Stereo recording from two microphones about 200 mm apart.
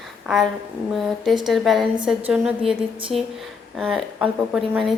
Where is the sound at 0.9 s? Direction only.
Centre (ahead or behind).